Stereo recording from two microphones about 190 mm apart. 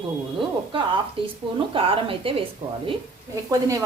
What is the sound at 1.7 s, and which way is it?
Speech, 30° right (ahead or behind).